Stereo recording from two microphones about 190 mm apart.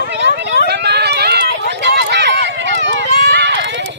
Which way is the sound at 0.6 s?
60° right (ahead or behind).